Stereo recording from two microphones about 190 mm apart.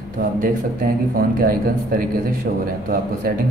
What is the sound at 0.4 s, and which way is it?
Speech, 50° right (ahead or behind).